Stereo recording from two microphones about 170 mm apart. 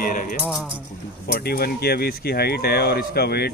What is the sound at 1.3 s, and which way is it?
Speech, 65° left (ahead or behind).